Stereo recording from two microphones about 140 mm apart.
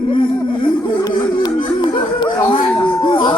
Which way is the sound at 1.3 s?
35° left (ahead or behind).